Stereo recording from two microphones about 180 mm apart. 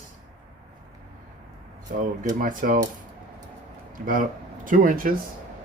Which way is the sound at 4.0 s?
50° right (ahead or behind).